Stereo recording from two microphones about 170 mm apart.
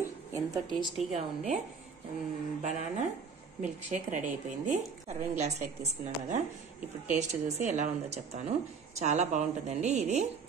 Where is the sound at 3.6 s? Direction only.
45° right (ahead or behind).